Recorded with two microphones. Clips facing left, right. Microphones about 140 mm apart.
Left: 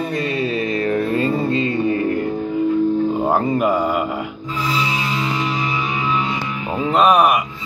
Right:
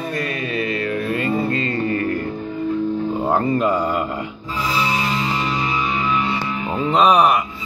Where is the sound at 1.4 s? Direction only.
20° left (ahead or behind).